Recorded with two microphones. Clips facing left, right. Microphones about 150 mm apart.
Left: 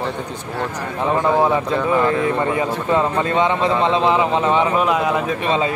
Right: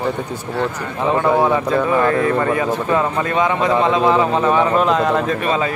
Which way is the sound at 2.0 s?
20° left (ahead or behind).